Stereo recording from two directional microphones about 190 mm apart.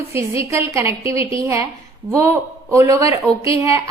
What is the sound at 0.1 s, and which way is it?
A woman's voice, 15° right (ahead or behind).